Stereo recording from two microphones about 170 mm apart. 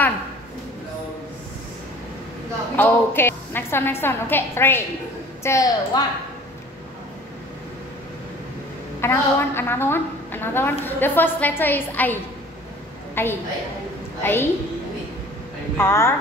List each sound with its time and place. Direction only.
2.7 s a woman's voice: 10° left (ahead or behind)
9.0 s a woman's voice: 15° left (ahead or behind)
15.8 s a woman's voice: 15° left (ahead or behind)